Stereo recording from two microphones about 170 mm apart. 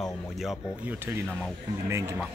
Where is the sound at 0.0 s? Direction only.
Centre (ahead or behind).